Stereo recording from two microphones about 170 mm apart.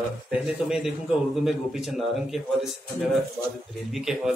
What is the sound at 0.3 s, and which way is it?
Speech, 5° right (ahead or behind).